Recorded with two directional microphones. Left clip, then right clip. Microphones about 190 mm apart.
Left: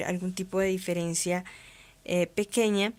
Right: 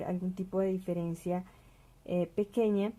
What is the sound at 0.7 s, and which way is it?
Speech, 15° left (ahead or behind).